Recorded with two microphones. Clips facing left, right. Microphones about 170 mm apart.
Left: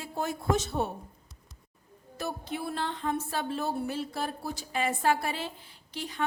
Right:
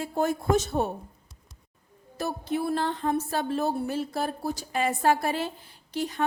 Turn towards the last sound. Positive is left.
turn(degrees=-45)  # may be behind; listen again after turning